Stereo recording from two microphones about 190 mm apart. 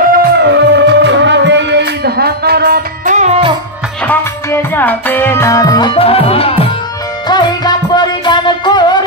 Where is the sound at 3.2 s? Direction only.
30° right (ahead or behind).